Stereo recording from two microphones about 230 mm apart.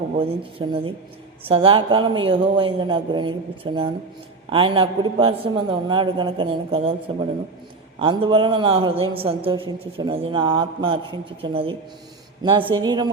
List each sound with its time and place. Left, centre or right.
0.2 s a man's voice: right
7.9 s a man's voice: right